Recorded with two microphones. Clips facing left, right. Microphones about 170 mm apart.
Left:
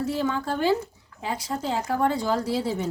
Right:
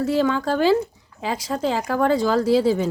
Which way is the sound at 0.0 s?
90° right.